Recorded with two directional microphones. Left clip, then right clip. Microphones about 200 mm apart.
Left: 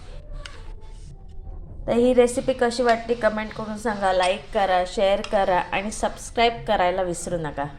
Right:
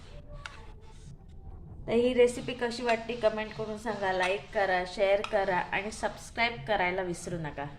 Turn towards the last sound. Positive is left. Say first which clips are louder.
# left 10 dB
turn(degrees=15)  # may be behind; listen again after turning